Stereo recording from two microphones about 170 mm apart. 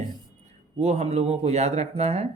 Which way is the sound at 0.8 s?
40° right (ahead or behind).